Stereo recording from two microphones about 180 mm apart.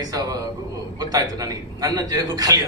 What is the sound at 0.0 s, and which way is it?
A man's voice, 20° right (ahead or behind).